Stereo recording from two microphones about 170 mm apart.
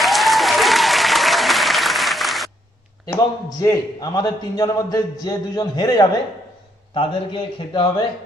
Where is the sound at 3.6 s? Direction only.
20° left (ahead or behind).